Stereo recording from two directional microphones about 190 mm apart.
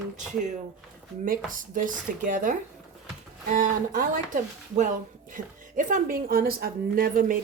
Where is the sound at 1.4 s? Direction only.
45° right (ahead or behind).